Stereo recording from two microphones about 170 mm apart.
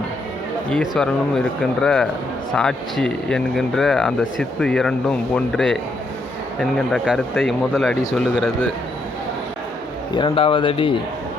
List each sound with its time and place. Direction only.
0.7 s speech: 5° left (ahead or behind)
10.2 s speech: 35° left (ahead or behind)